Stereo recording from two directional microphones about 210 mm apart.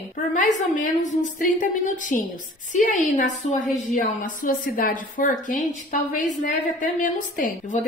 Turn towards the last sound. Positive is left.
turn(degrees=40)  # may be behind; listen again after turning